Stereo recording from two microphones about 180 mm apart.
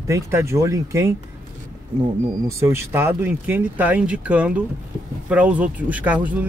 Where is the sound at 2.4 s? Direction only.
15° right (ahead or behind).